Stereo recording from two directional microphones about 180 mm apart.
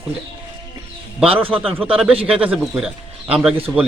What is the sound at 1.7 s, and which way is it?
Speech, 5° right (ahead or behind).